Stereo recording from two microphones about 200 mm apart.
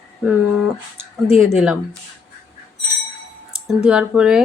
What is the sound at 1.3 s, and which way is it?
Speech, centre (ahead or behind).